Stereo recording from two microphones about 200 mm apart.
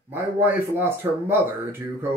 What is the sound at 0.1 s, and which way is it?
Speech, 10° right (ahead or behind).